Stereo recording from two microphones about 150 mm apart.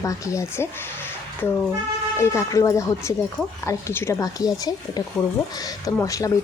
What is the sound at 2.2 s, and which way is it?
Speech, 20° left (ahead or behind).